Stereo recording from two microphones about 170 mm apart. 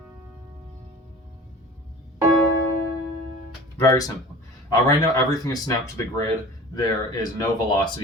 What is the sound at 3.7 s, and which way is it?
Speech, 20° left (ahead or behind).